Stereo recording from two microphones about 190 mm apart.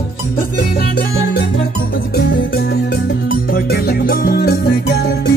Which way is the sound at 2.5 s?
60° left (ahead or behind).